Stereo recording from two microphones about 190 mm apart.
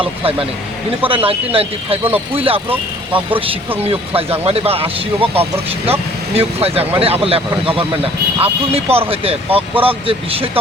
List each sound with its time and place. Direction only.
0.2 s speech: 30° right (ahead or behind)
2.6 s speech: 10° right (ahead or behind)
3.8 s speech: 30° right (ahead or behind)